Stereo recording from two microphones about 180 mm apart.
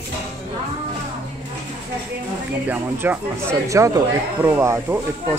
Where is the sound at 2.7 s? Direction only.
10° right (ahead or behind).